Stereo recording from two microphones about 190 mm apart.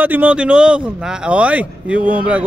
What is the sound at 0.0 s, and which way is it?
Speech, 10° right (ahead or behind).